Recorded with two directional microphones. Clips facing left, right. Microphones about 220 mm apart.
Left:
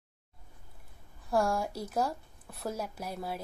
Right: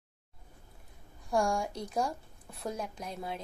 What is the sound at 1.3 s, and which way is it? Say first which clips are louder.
A woman's voice: left 1 dB; 5° left (ahead or behind).